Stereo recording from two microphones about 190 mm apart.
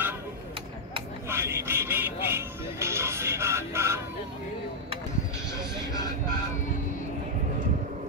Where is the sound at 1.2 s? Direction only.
15° right (ahead or behind).